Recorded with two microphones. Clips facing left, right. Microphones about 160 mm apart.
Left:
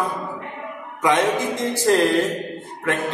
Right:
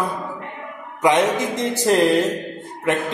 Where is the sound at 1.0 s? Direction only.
20° right (ahead or behind).